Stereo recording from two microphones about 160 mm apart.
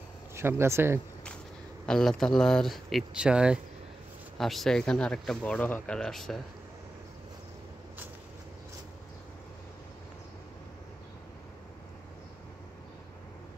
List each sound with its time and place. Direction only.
0.4 s speech: 15° right (ahead or behind)
1.9 s speech: 5° left (ahead or behind)